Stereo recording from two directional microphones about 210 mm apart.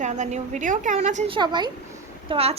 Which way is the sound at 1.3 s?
20° right (ahead or behind).